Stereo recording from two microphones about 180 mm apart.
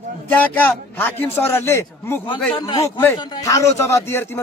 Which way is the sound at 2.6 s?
25° left (ahead or behind).